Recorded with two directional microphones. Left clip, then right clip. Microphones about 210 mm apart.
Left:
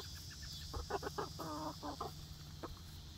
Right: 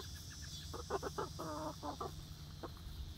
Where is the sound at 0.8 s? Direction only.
15° left (ahead or behind).